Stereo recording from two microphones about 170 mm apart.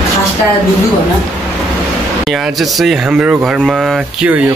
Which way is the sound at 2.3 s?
Centre (ahead or behind).